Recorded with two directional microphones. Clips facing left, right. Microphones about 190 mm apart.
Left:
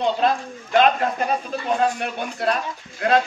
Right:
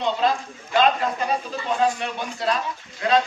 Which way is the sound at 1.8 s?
55° left (ahead or behind).